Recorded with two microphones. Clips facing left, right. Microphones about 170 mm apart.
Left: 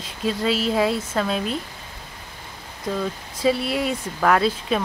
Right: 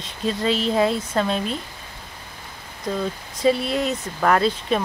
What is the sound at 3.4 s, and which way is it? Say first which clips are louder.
Speech: right 1 dB; 5° left (ahead or behind).